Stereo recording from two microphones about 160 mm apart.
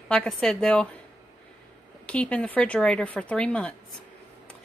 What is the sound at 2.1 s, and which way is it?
Speech, 5° left (ahead or behind).